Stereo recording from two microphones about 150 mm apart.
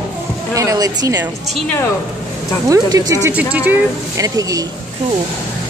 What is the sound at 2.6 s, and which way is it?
Speech, 25° right (ahead or behind).